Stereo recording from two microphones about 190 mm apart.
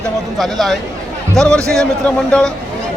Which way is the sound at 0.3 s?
Centre (ahead or behind).